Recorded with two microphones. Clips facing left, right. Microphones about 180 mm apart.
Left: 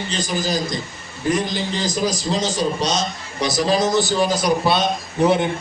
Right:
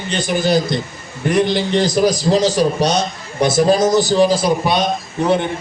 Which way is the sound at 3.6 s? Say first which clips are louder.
Right 4 dB; 45° right (ahead or behind).